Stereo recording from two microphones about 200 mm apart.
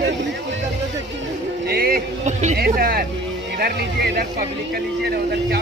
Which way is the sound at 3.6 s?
55° right (ahead or behind).